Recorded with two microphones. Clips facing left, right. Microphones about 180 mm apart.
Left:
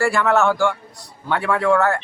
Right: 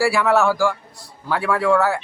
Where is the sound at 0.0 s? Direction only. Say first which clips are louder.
Even; 5° right (ahead or behind).